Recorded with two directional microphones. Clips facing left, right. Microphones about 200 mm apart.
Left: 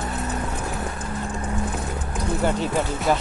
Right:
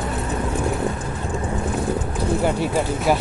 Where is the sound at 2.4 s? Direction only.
10° right (ahead or behind).